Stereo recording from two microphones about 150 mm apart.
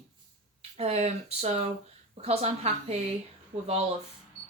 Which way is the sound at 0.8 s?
45° right (ahead or behind).